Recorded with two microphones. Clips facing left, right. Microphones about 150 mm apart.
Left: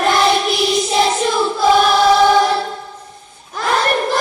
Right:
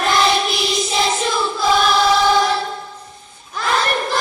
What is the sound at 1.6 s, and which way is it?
Choir, 55° left (ahead or behind).